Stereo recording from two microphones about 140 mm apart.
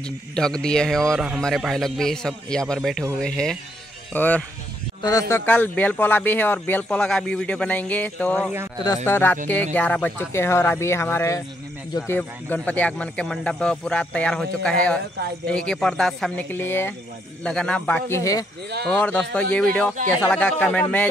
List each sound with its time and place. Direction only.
0.4 s a man's voice: 5° left (ahead or behind)
5.0 s speech: 25° left (ahead or behind)
5.4 s speech: 10° left (ahead or behind)
8.4 s a man's voice: 15° right (ahead or behind)
9.0 s speech: 15° left (ahead or behind)
18.9 s speech: 10° left (ahead or behind)